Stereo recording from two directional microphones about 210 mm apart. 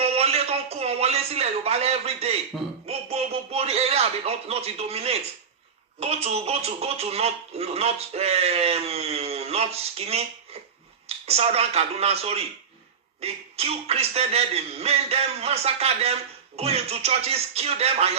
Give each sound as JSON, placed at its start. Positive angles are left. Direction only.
{"t": 0.0, "sound": "a sound", "side_deg": -30}
{"t": 2.8, "sound": "speech", "side_deg": -30}
{"t": 11.3, "sound": "speech", "side_deg": -30}